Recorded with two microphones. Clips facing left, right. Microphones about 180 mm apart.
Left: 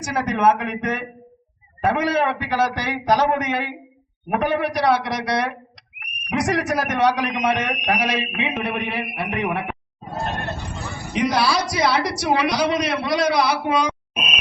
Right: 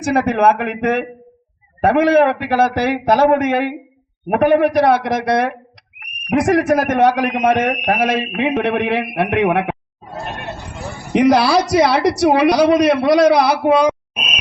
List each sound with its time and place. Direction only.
0.0 s a man's voice: 60° right (ahead or behind)
8.6 s a man's voice: 80° right
11.1 s speech: 65° right (ahead or behind)